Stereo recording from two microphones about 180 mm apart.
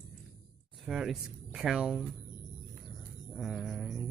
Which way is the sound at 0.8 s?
Centre (ahead or behind).